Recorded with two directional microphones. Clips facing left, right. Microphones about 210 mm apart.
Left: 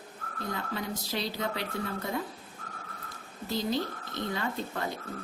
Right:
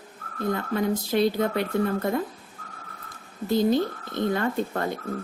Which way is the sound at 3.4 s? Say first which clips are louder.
Right 9 dB; 50° right (ahead or behind).